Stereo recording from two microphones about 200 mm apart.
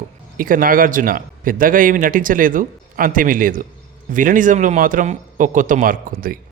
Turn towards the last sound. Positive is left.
turn(degrees=-45)  # may be behind; listen again after turning